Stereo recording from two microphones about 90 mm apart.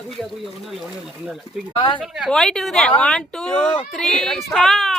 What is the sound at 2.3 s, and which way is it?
Speech, 5° left (ahead or behind).